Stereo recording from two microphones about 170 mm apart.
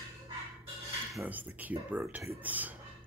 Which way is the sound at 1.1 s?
10° right (ahead or behind).